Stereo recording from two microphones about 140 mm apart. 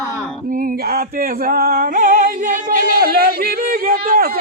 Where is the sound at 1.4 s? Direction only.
90° right.